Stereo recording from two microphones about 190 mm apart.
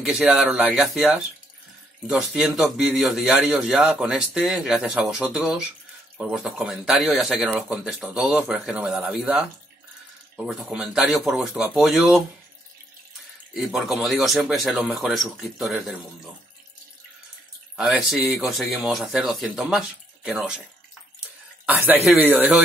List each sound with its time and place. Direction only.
0.0 s a man's voice: 5° right (ahead or behind)
13.5 s a man's voice: centre (ahead or behind)
17.7 s a man's voice: centre (ahead or behind)
21.6 s speech: 10° right (ahead or behind)